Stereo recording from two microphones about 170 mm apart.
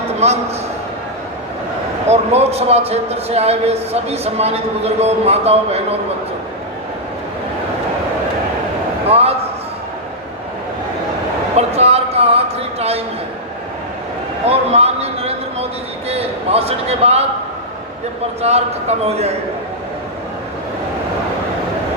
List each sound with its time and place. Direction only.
2.0 s a man's voice: 40° right (ahead or behind)
9.0 s speech: 35° right (ahead or behind)
11.5 s a sound: 40° right (ahead or behind)
14.5 s a sound: 35° right (ahead or behind)
16.0 s a man's voice: 35° right (ahead or behind)
18.4 s a man's voice: 40° right (ahead or behind)